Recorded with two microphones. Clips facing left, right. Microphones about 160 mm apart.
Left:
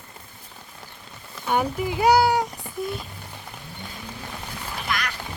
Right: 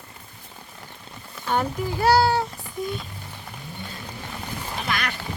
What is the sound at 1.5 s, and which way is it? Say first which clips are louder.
Speech: left 1 dB; 10° left (ahead or behind).